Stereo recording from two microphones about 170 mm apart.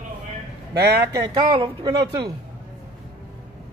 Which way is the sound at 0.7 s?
75° right (ahead or behind).